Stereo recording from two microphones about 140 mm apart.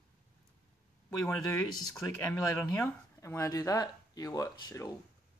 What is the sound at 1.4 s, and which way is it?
Speech, 25° left (ahead or behind).